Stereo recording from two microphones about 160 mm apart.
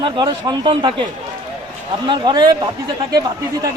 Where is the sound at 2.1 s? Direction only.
30° right (ahead or behind).